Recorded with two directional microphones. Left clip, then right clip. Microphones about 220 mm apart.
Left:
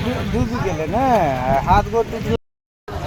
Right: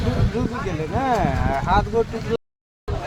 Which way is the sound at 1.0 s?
50° left (ahead or behind).